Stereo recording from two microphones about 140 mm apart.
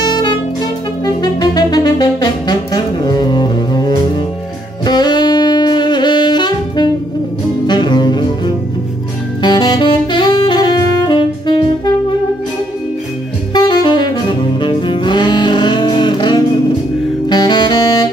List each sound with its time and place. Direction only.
0.0 s saxophone: 30° left (ahead or behind)
1.0 s music: 30° left (ahead or behind)
4.8 s saxophone: 30° left (ahead or behind)
9.4 s saxophone: 30° left (ahead or behind)
13.5 s saxophone: 30° left (ahead or behind)